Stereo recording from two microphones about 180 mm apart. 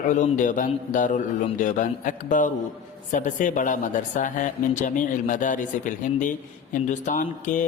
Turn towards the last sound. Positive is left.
turn(degrees=45)  # may be behind; listen again after turning